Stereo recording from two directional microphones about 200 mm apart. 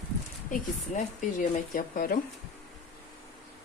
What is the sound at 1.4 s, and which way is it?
Speech, 45° left (ahead or behind).